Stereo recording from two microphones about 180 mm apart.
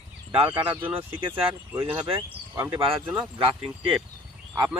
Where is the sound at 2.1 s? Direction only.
15° right (ahead or behind).